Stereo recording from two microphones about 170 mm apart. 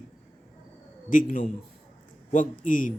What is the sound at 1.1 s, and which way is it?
A man's voice, 55° left (ahead or behind).